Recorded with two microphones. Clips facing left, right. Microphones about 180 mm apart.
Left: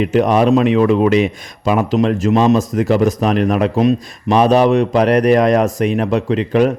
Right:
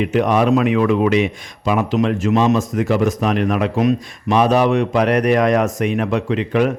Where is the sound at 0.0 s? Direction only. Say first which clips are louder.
Left 3 dB; 35° left (ahead or behind).